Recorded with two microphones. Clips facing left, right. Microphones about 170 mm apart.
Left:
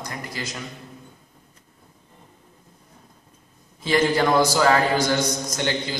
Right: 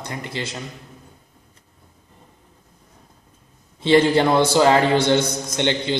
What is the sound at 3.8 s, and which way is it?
A man's voice, 25° right (ahead or behind).